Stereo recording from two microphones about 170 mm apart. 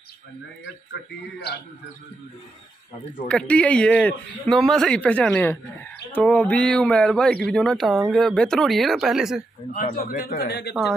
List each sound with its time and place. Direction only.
3.3 s speech: 5° left (ahead or behind)
9.9 s a man's voice: 60° left (ahead or behind)